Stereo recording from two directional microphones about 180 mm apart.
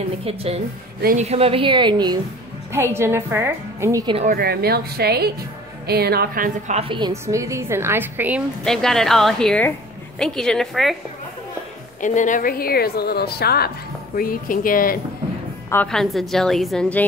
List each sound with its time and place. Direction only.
0.2 s a woman's voice: 35° right (ahead or behind)
2.7 s a woman's voice: 15° right (ahead or behind)
4.3 s speech: 55° right (ahead or behind)
6.8 s a woman's voice: 25° right (ahead or behind); by 8.4 s 10° right (ahead or behind)
8.6 s a woman's voice: 5° left (ahead or behind)
12.0 s a woman's voice: 45° left (ahead or behind)
15.7 s a woman's voice: 5° left (ahead or behind)